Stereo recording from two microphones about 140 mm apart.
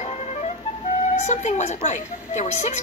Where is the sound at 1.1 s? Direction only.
55° left (ahead or behind).